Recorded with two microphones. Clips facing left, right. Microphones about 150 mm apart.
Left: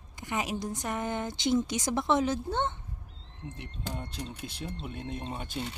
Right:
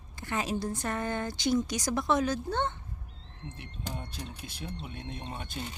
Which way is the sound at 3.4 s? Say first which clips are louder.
Left 2 dB; 5° left (ahead or behind).